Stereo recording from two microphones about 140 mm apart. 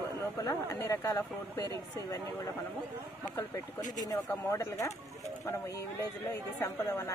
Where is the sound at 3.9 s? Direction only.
25° left (ahead or behind).